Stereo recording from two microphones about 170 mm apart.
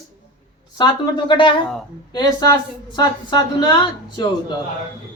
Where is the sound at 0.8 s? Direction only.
30° left (ahead or behind).